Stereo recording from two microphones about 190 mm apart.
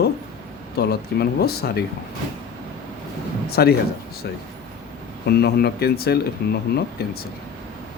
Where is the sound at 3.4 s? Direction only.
55° left (ahead or behind).